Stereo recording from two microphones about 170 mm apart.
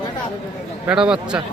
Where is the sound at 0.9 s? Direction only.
5° right (ahead or behind).